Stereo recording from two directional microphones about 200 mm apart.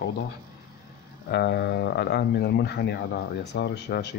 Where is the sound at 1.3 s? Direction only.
60° left (ahead or behind).